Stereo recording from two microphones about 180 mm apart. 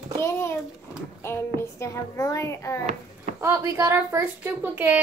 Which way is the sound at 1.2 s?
15° left (ahead or behind).